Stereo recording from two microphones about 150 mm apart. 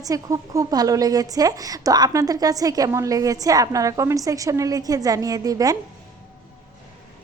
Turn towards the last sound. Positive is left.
turn(degrees=-25)  # may be behind; listen again after turning